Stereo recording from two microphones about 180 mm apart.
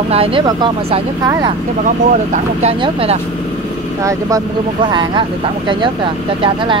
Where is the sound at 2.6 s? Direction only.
35° right (ahead or behind).